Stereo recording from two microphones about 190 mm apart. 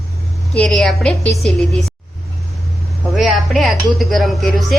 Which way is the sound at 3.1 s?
Centre (ahead or behind).